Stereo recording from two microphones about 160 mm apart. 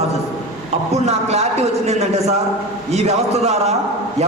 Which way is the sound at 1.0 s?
40° right (ahead or behind).